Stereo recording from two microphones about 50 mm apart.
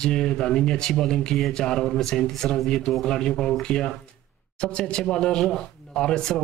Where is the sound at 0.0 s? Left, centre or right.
Centre.